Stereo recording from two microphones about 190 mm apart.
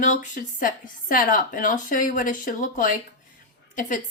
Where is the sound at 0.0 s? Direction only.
40° left (ahead or behind).